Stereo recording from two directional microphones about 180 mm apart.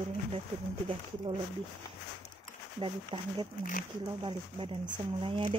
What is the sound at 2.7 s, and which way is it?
Speech, 30° right (ahead or behind).